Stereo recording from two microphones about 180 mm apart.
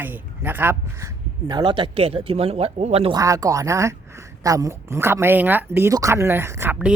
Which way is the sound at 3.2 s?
20° right (ahead or behind).